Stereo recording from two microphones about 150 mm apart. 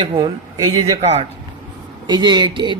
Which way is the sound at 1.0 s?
45° right (ahead or behind).